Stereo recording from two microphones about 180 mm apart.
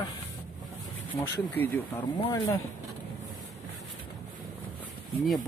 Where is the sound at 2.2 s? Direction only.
25° left (ahead or behind).